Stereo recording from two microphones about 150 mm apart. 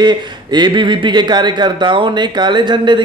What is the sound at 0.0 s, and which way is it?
Speech, 30° right (ahead or behind).